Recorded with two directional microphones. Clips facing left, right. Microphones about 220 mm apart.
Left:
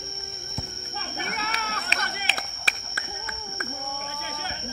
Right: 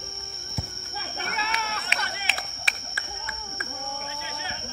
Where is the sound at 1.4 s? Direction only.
45° left (ahead or behind).